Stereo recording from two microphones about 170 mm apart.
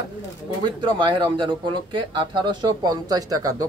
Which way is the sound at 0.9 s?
30° right (ahead or behind).